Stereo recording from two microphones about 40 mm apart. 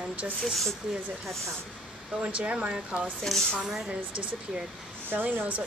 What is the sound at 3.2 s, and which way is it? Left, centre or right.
Speech, centre.